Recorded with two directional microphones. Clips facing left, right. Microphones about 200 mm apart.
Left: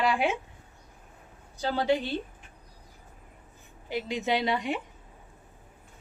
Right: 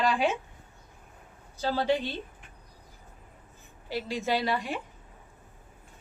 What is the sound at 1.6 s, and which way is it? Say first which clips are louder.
Speech: left 1 dB; 15° left (ahead or behind).